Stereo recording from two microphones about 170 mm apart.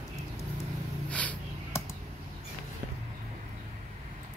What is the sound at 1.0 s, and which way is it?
Snort, 10° left (ahead or behind).